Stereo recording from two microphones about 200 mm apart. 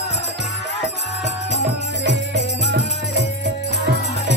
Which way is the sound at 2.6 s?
60° right (ahead or behind).